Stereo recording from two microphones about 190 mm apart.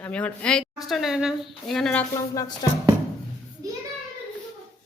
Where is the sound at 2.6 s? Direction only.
20° left (ahead or behind).